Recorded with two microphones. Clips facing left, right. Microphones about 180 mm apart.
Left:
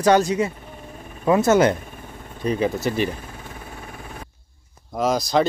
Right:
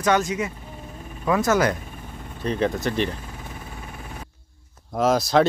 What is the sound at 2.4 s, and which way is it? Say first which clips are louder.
Speech: left 2 dB; 10° left (ahead or behind).